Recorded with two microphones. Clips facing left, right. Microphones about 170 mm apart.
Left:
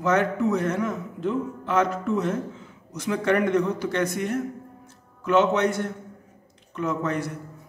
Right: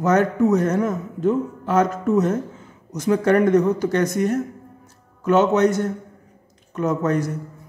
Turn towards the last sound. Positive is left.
turn(degrees=-40)  # may be behind; listen again after turning